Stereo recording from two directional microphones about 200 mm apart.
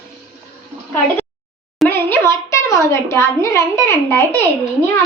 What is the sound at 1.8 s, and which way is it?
A child's voice, 10° left (ahead or behind).